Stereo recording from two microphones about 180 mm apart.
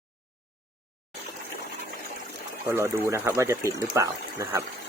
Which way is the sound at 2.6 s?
15° right (ahead or behind).